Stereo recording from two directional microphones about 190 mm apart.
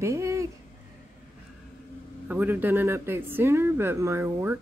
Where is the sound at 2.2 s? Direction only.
10° right (ahead or behind).